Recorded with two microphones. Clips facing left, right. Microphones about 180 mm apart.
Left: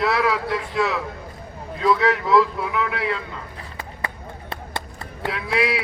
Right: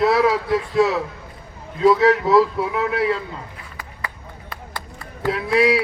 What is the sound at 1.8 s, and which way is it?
Speech, 35° right (ahead or behind).